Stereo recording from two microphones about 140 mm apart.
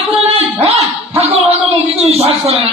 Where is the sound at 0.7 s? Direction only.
50° right (ahead or behind).